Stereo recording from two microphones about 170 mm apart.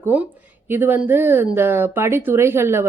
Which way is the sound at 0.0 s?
10° right (ahead or behind).